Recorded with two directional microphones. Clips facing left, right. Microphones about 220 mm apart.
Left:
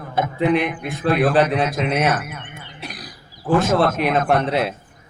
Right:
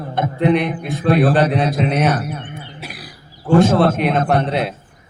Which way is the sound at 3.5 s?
30° right (ahead or behind).